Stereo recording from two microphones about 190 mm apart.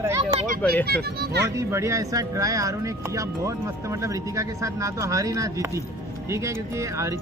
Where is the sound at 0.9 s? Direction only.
55° right (ahead or behind).